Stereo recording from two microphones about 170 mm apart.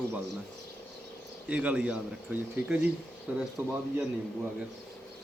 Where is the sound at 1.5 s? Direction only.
5° right (ahead or behind).